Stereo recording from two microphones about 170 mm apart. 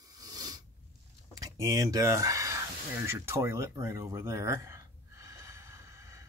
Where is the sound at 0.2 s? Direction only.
20° right (ahead or behind).